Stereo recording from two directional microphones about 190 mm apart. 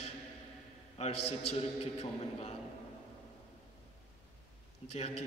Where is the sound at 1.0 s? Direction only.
35° left (ahead or behind).